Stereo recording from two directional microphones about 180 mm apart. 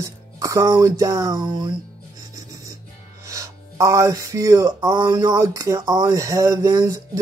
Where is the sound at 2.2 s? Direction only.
20° right (ahead or behind).